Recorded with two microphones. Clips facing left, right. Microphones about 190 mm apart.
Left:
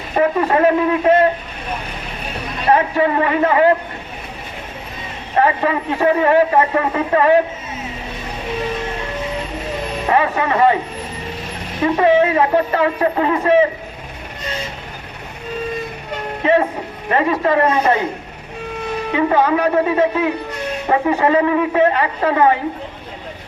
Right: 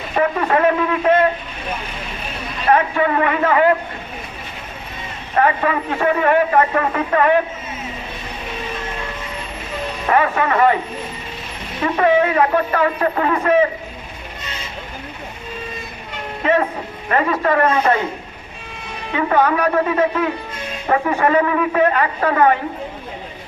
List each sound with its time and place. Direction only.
0.2 s a man's voice: 30° left (ahead or behind)
2.6 s a man's voice: 30° left (ahead or behind)
5.4 s a man's voice: 30° left (ahead or behind)
10.1 s a man's voice: 25° left (ahead or behind)
11.8 s a man's voice: 25° left (ahead or behind)
16.4 s a man's voice: 25° left (ahead or behind)
19.1 s a man's voice: 20° left (ahead or behind)